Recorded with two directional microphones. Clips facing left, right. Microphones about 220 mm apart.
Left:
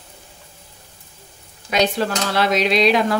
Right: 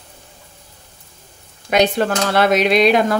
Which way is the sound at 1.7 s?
55° right (ahead or behind).